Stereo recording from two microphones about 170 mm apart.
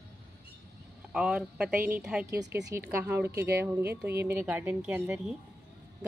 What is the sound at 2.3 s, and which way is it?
Speech, 80° right.